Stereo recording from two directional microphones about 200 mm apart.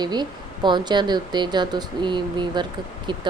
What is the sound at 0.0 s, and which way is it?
Speech, 20° right (ahead or behind).